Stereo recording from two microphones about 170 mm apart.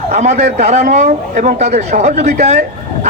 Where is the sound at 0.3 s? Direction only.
40° right (ahead or behind).